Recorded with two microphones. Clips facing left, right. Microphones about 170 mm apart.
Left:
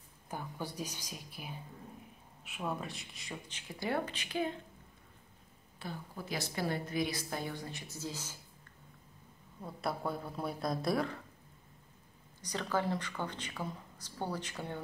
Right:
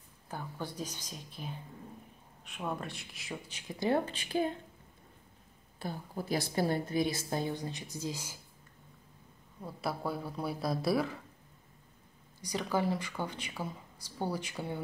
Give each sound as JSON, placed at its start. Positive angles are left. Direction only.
{"t": 0.3, "sound": "speech", "side_deg": 10}
{"t": 3.8, "sound": "a woman's voice", "side_deg": -25}
{"t": 5.8, "sound": "a woman's voice", "side_deg": -40}
{"t": 9.6, "sound": "speech", "side_deg": 0}
{"t": 12.4, "sound": "speech", "side_deg": -10}